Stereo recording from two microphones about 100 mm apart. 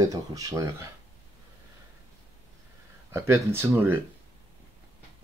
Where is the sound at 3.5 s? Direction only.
20° right (ahead or behind).